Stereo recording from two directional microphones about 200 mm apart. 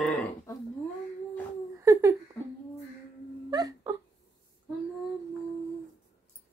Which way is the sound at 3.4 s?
20° right (ahead or behind).